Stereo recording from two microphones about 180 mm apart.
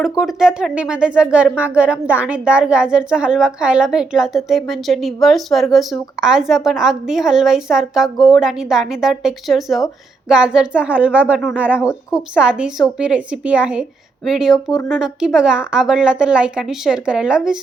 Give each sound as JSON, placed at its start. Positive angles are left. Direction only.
{"t": 0.0, "sound": "speech", "side_deg": 0}